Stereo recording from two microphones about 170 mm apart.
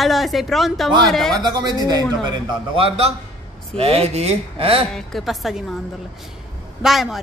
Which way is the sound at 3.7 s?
35° right (ahead or behind).